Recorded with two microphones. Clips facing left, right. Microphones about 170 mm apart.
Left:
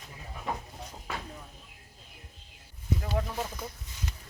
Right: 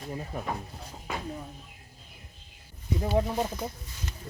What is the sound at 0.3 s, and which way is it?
Speech, 50° right (ahead or behind).